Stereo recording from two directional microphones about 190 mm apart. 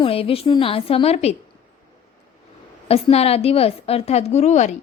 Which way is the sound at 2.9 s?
30° left (ahead or behind).